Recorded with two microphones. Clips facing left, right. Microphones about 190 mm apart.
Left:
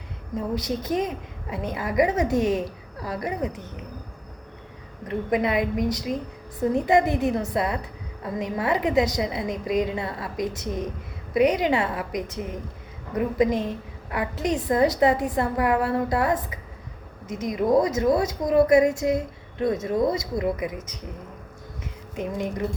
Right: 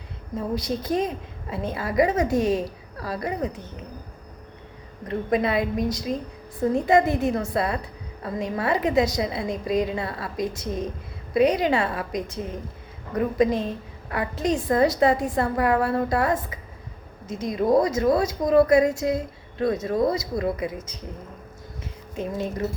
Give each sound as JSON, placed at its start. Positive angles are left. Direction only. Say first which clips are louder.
{"t": 0.3, "sound": "a woman's voice", "louder": "even", "side_deg": 20}
{"t": 5.0, "sound": "a woman's voice", "louder": "right 1 dB", "side_deg": 20}
{"t": 22.4, "sound": "a woman's voice", "louder": "even", "side_deg": 15}